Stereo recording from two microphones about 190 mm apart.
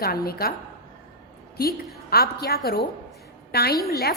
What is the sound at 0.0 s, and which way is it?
Speech, 55° left (ahead or behind).